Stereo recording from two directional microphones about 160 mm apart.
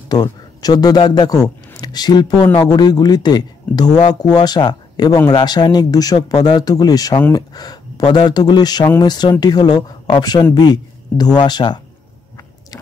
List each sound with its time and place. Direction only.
0.1 s speech: 25° left (ahead or behind)